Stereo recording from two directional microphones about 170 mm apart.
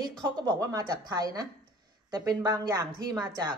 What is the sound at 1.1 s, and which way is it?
Speech, 20° right (ahead or behind).